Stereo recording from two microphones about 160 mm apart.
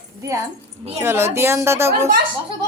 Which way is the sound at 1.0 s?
15° right (ahead or behind).